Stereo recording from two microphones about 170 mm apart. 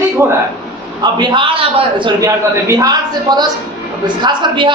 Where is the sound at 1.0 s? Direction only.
25° right (ahead or behind).